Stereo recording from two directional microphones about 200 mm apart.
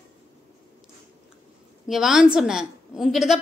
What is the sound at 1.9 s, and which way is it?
A woman's voice, centre (ahead or behind).